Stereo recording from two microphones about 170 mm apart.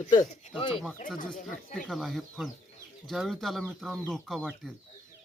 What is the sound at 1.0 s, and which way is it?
Speech, 45° left (ahead or behind).